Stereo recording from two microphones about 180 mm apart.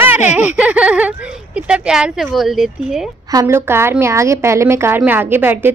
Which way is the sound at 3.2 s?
15° right (ahead or behind).